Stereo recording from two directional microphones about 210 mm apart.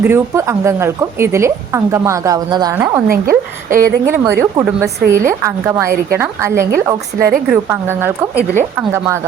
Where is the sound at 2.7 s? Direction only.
10° right (ahead or behind).